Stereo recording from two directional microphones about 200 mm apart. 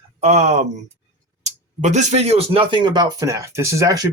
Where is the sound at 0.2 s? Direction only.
30° right (ahead or behind).